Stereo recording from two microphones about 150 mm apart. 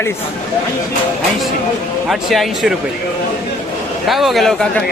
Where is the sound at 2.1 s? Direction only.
Centre (ahead or behind).